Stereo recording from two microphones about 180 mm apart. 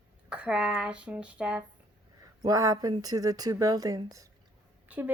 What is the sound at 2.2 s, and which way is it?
Speech, 20° right (ahead or behind).